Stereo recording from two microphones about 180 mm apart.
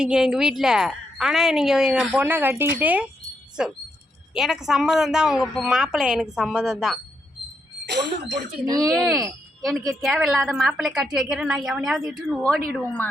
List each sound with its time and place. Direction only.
0.0 s a woman's voice: 5° right (ahead or behind)
4.4 s a woman's voice: centre (ahead or behind)
7.9 s speech: 75° right (ahead or behind)
8.6 s speech: 20° right (ahead or behind)
8.9 s a woman's voice: centre (ahead or behind)
12.7 s speech: 10° left (ahead or behind)